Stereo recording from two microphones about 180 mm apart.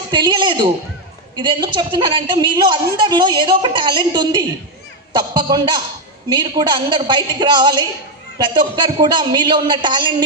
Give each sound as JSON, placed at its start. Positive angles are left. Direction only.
{"t": 0.1, "sound": "a woman's voice", "side_deg": -25}